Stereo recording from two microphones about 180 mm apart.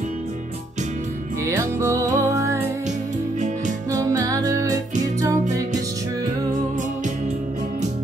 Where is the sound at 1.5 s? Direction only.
15° right (ahead or behind).